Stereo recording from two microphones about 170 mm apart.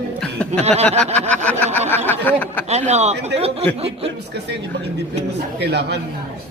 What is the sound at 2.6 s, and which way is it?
Speech, 40° right (ahead or behind).